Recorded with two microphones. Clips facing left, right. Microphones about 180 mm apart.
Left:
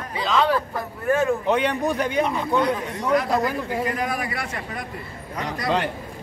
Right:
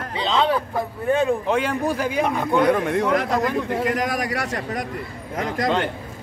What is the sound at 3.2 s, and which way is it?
Speech, 5° left (ahead or behind).